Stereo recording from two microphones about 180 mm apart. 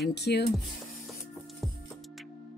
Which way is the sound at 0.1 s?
65° left (ahead or behind).